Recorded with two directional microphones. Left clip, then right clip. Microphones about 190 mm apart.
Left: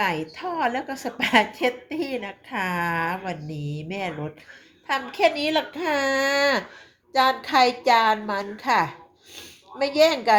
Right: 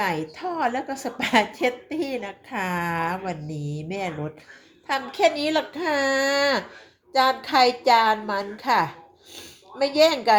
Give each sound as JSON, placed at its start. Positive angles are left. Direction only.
{"t": 0.0, "sound": "a woman's voice", "side_deg": 5}